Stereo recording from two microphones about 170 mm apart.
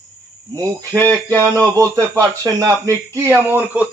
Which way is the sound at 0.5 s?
20° right (ahead or behind).